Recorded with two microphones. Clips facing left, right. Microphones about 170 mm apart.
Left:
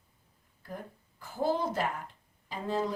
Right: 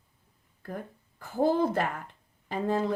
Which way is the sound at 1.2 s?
55° right (ahead or behind).